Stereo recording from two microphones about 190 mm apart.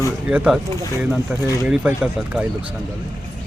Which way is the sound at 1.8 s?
5° right (ahead or behind).